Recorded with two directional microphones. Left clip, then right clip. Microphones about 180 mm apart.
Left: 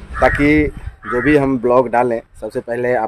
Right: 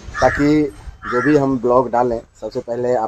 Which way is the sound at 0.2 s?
5° left (ahead or behind).